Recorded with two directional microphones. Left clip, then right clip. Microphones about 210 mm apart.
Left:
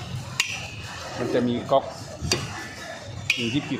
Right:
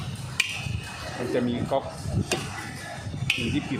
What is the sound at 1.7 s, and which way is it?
Dishes, 20° left (ahead or behind).